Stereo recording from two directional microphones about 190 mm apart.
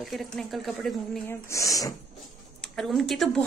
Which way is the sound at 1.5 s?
15° left (ahead or behind).